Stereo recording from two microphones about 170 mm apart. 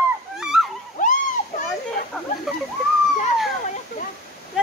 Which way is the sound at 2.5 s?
Centre (ahead or behind).